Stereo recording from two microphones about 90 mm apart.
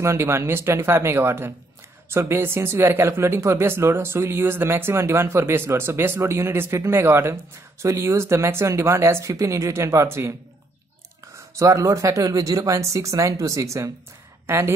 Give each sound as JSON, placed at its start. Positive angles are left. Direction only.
{"t": 0.0, "sound": "speech", "side_deg": -30}
{"t": 11.5, "sound": "speech", "side_deg": -35}